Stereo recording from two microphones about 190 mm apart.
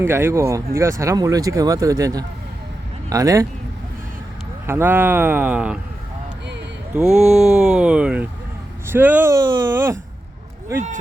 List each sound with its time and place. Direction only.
0.0 s speech: 10° right (ahead or behind)
4.6 s speech: 10° right (ahead or behind)
6.9 s speech: 5° right (ahead or behind)